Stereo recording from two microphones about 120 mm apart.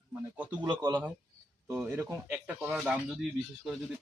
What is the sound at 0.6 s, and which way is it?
Speech, 35° right (ahead or behind).